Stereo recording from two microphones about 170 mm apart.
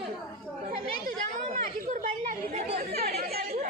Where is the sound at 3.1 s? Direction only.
65° right (ahead or behind).